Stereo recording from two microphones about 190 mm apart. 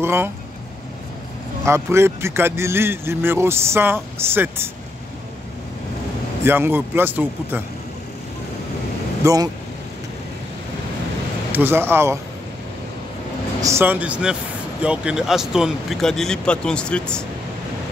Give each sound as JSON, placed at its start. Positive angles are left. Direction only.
{"t": 0.0, "sound": "speech", "side_deg": -15}
{"t": 1.7, "sound": "speech", "side_deg": -15}
{"t": 6.4, "sound": "speech", "side_deg": -10}
{"t": 9.2, "sound": "speech", "side_deg": -20}
{"t": 11.5, "sound": "speech", "side_deg": -10}
{"t": 13.6, "sound": "speech", "side_deg": -15}